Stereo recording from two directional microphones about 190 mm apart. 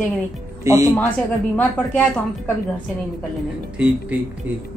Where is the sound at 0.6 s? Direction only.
20° right (ahead or behind).